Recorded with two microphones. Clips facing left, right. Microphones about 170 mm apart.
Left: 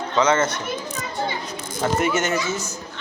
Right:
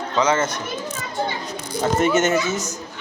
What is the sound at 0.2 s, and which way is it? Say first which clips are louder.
Speech: left 1 dB; 15° right (ahead or behind).